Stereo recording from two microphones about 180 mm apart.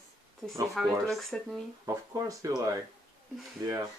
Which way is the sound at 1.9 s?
20° right (ahead or behind).